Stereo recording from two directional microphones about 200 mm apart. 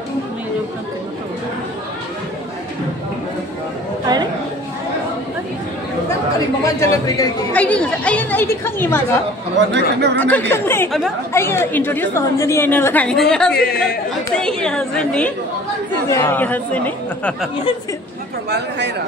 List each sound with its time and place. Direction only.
6.6 s a woman's voice: 15° left (ahead or behind)
7.5 s a woman's voice: 5° left (ahead or behind)
9.7 s speech: 60° right (ahead or behind)
10.1 s a woman's voice: 10° left (ahead or behind)